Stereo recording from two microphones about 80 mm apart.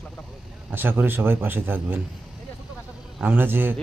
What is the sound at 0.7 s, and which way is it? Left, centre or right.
Speech, right.